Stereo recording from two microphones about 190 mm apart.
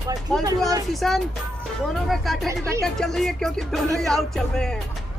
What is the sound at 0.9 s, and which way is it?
Music, centre (ahead or behind).